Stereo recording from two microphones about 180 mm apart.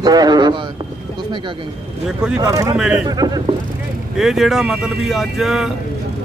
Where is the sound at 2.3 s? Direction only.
20° right (ahead or behind).